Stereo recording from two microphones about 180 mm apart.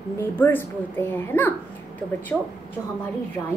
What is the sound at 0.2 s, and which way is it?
A woman's voice, 10° left (ahead or behind).